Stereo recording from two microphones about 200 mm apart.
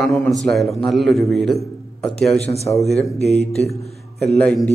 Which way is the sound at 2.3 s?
30° left (ahead or behind).